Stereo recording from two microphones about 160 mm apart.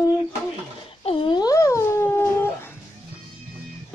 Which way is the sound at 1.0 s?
35° left (ahead or behind).